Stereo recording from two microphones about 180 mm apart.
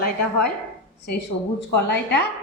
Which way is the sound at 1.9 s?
65° left (ahead or behind).